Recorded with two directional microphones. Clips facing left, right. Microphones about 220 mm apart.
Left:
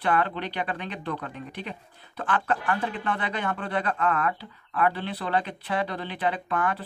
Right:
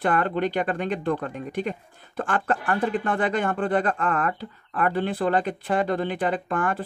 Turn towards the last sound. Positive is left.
turn(degrees=-50)  # may be behind; listen again after turning